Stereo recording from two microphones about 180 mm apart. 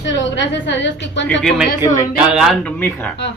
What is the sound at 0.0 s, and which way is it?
A woman's voice, 90° left.